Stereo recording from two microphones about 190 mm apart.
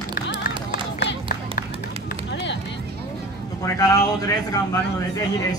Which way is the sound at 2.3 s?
70° left (ahead or behind).